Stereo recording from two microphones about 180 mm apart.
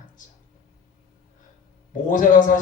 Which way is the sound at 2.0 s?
45° left (ahead or behind).